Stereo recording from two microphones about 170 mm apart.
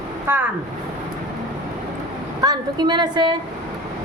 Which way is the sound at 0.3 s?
15° right (ahead or behind).